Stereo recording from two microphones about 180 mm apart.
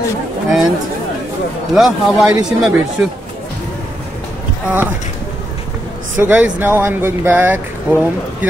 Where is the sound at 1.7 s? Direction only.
Centre (ahead or behind).